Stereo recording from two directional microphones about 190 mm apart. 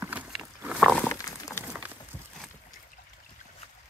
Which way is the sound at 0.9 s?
10° left (ahead or behind).